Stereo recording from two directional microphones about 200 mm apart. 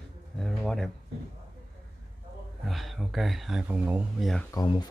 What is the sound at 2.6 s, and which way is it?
Speech, centre (ahead or behind).